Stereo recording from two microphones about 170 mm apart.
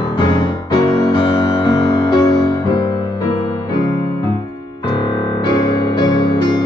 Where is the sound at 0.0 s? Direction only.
25° left (ahead or behind).